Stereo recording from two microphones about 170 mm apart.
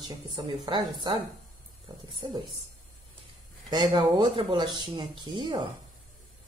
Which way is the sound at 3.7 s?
25° right (ahead or behind).